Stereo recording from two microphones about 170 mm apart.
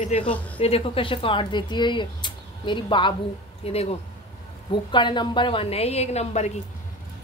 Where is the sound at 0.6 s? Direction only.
35° left (ahead or behind).